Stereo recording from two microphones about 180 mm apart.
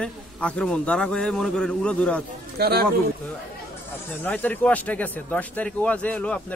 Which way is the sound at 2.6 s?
60° right (ahead or behind).